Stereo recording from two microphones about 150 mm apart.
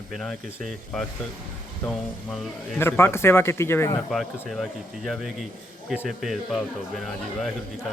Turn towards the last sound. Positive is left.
turn(degrees=0)  # may be behind; listen again after turning